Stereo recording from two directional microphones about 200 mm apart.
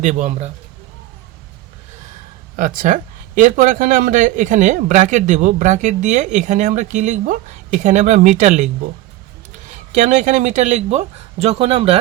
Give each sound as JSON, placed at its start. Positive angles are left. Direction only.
{"t": 0.0, "sound": "speech", "side_deg": -35}
{"t": 2.6, "sound": "speech", "side_deg": -40}
{"t": 9.9, "sound": "speech", "side_deg": -40}